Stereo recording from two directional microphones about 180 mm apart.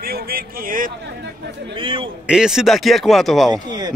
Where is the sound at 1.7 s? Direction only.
30° right (ahead or behind).